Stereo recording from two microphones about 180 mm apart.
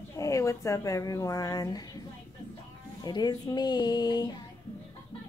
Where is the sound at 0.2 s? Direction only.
15° left (ahead or behind).